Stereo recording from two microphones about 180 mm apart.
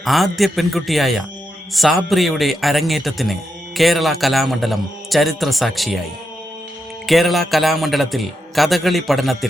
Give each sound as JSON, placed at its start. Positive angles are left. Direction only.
{"t": 0.0, "sound": "a man's voice", "side_deg": 0}
{"t": 7.1, "sound": "a man's voice", "side_deg": 0}